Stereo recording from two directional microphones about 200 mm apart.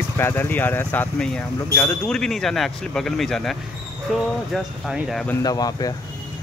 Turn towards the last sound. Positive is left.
turn(degrees=20)  # may be behind; listen again after turning